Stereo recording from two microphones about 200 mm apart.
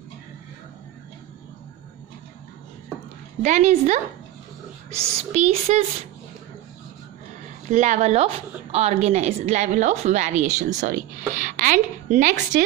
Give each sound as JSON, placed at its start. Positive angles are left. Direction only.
{"t": 3.4, "sound": "a woman's voice", "side_deg": -35}
{"t": 5.3, "sound": "a woman's voice", "side_deg": -35}
{"t": 7.7, "sound": "a woman's voice", "side_deg": -40}